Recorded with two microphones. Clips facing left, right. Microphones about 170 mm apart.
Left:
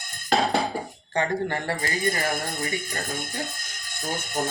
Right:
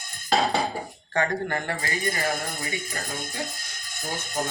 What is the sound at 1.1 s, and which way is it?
Speech, 25° left (ahead or behind).